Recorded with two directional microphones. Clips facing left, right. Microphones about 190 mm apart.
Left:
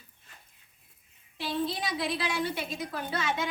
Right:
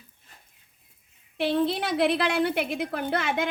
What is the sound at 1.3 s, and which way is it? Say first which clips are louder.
A woman's voice: right 7 dB; 65° right (ahead or behind).